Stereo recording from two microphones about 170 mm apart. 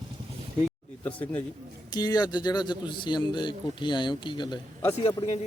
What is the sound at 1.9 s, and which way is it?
A man's voice, 25° left (ahead or behind).